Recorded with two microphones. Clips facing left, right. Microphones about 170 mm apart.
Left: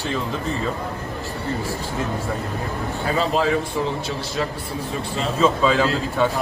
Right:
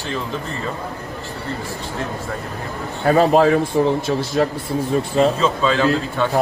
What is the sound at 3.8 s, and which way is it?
Speech, 45° right (ahead or behind).